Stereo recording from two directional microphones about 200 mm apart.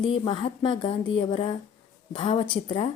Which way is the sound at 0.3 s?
25° left (ahead or behind).